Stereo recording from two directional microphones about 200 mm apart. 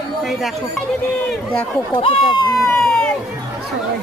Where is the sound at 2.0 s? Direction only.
25° left (ahead or behind).